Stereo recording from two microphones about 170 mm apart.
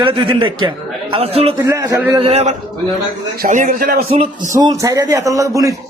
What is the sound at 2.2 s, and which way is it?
Speech, 40° right (ahead or behind).